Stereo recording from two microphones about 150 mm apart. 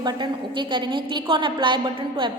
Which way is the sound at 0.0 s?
30° right (ahead or behind).